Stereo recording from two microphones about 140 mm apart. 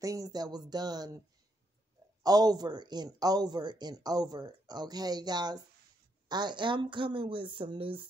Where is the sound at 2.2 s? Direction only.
30° right (ahead or behind).